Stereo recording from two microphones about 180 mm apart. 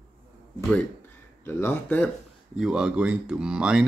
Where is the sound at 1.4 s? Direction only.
10° left (ahead or behind).